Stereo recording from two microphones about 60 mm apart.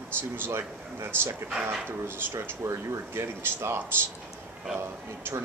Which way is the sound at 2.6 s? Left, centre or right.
Right.